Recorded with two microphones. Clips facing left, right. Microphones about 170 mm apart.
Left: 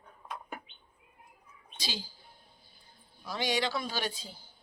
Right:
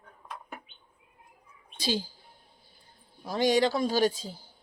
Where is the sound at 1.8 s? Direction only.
50° right (ahead or behind).